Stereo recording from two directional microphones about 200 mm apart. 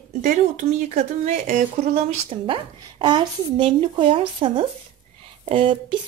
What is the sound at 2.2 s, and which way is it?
A woman's voice, 25° right (ahead or behind).